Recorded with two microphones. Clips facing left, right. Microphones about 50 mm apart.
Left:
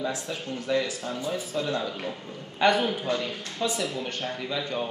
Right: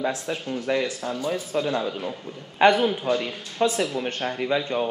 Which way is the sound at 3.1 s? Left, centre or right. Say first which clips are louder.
Right 4 dB; right.